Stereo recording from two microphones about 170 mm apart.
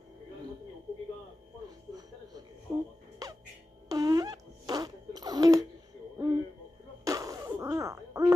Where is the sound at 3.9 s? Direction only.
25° right (ahead or behind).